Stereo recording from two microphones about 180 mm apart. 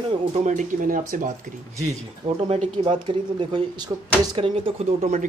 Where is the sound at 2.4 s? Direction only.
35° right (ahead or behind).